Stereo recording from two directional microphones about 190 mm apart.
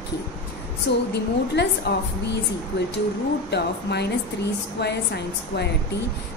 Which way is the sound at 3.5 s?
60° left (ahead or behind).